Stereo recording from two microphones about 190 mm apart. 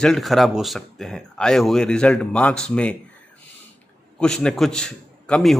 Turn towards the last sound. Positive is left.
turn(degrees=5)  # may be behind; listen again after turning